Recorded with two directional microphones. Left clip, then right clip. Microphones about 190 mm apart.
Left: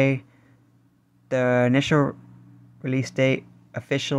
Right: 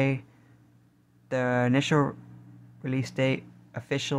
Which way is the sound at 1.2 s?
20° left (ahead or behind).